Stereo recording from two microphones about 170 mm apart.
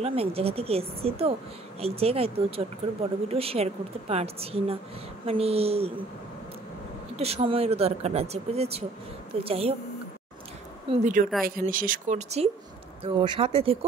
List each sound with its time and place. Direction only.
0.0 s speech: 35° right (ahead or behind)
7.2 s speech: 35° right (ahead or behind)
10.9 s speech: 30° right (ahead or behind)
11.4 s speech: 55° right (ahead or behind)
13.0 s speech: 30° right (ahead or behind)